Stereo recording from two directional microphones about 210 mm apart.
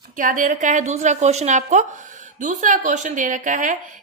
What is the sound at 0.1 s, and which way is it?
A woman's voice, 40° right (ahead or behind).